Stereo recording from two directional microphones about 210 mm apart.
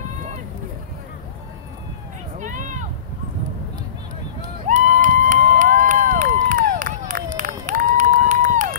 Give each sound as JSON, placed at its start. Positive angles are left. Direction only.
{"t": 2.3, "sound": "vehicle", "side_deg": -35}
{"t": 4.6, "sound": "crowd", "side_deg": -35}
{"t": 7.3, "sound": "run", "side_deg": -40}